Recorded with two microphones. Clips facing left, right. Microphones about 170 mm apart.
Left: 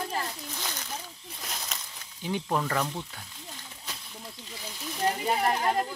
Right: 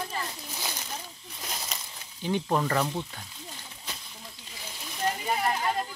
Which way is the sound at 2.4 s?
5° right (ahead or behind).